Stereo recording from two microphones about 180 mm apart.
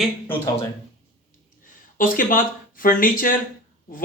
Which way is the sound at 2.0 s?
50° left (ahead or behind).